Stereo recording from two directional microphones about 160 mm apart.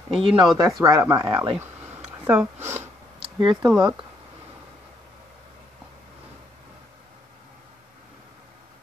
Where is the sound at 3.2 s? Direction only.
30° right (ahead or behind).